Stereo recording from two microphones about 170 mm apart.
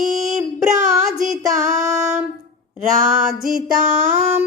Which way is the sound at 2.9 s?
45° right (ahead or behind).